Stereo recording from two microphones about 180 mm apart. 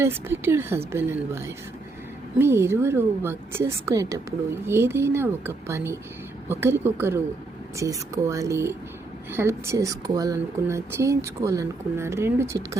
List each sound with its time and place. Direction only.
0.0 s a woman's voice: 10° right (ahead or behind)